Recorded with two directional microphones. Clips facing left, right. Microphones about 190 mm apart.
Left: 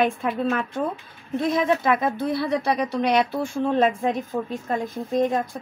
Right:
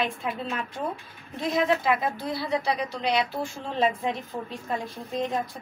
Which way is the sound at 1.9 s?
55° left (ahead or behind).